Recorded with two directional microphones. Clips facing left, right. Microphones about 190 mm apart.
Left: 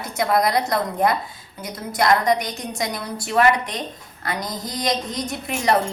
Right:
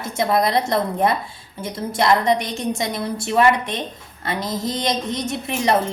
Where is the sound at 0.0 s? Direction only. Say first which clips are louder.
Right 1 dB; 25° right (ahead or behind).